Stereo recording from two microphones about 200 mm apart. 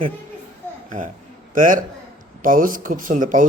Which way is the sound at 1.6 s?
40° right (ahead or behind).